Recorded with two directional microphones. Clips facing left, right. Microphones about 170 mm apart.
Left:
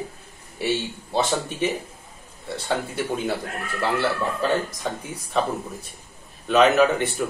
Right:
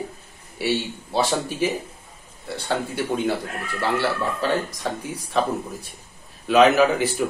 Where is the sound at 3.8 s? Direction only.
Centre (ahead or behind).